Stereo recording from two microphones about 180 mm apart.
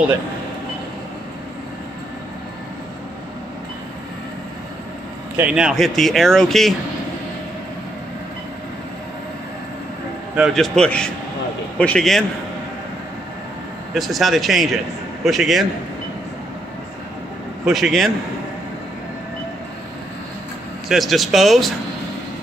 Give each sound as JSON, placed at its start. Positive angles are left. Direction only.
{"t": 5.3, "sound": "speech", "side_deg": -5}
{"t": 10.3, "sound": "speech", "side_deg": 0}
{"t": 13.9, "sound": "speech", "side_deg": 0}
{"t": 17.6, "sound": "speech", "side_deg": 0}
{"t": 20.9, "sound": "speech", "side_deg": 0}